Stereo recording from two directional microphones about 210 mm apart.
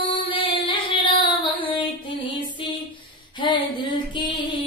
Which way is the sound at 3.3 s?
20° left (ahead or behind).